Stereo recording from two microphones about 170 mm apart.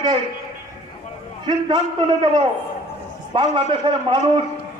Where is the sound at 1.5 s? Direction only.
25° right (ahead or behind).